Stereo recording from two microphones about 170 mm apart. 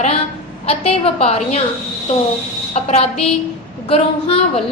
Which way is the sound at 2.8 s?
35° left (ahead or behind).